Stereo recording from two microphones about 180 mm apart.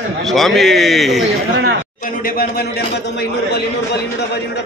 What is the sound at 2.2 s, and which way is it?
Speech, 55° left (ahead or behind).